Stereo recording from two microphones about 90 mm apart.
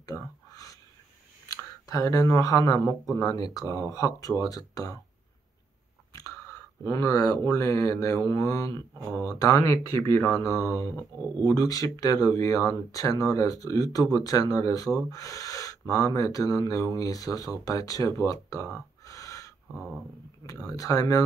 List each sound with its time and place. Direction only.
0.0 s whispering: 40° left (ahead or behind)
1.5 s speech: 40° left (ahead or behind)
6.1 s speech: 35° left (ahead or behind)